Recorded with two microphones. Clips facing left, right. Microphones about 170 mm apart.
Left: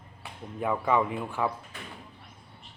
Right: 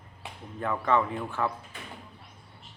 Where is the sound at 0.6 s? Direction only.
15° left (ahead or behind).